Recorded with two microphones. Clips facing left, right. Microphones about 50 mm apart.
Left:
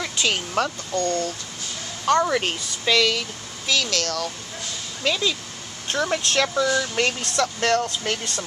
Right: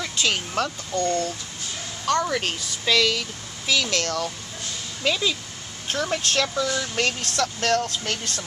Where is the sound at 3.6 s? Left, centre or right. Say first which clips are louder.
Even; centre.